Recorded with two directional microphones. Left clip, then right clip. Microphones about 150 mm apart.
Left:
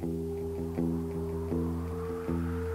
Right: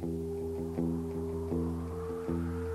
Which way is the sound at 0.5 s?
30° left (ahead or behind).